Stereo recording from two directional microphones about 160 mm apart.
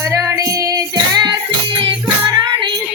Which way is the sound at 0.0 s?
15° right (ahead or behind).